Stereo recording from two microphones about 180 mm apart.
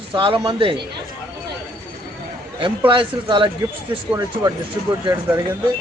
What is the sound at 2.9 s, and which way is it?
Speech, 25° right (ahead or behind).